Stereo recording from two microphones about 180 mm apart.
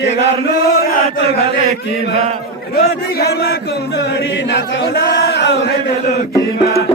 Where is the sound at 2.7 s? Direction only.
60° left (ahead or behind).